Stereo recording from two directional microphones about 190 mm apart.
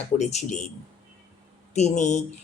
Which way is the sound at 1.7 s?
35° left (ahead or behind).